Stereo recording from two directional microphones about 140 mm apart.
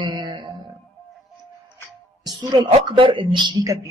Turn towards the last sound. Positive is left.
turn(degrees=-30)  # may be behind; listen again after turning